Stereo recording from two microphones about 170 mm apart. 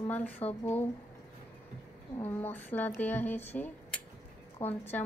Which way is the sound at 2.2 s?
10° left (ahead or behind).